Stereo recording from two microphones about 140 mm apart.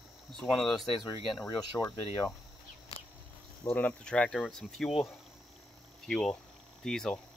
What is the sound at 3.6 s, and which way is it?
Speech, 15° left (ahead or behind).